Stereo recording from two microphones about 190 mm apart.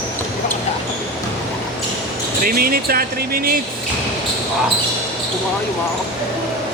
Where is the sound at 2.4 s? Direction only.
50° right (ahead or behind).